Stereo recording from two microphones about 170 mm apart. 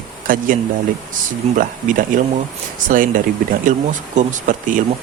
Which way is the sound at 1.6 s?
50° right (ahead or behind).